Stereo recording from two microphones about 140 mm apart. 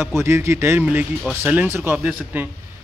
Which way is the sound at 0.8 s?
5° right (ahead or behind).